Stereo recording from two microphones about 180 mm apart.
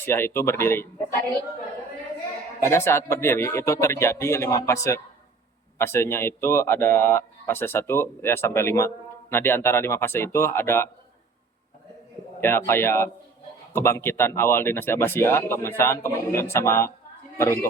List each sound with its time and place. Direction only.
0.0 s speech: 15° left (ahead or behind)
2.6 s speech: 15° left (ahead or behind)
12.4 s speech: 15° left (ahead or behind)